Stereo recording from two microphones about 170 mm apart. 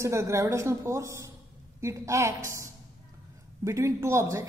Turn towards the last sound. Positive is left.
turn(degrees=-15)  # may be behind; listen again after turning